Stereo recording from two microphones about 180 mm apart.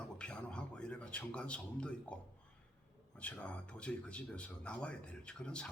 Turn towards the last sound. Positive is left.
turn(degrees=5)  # may be behind; listen again after turning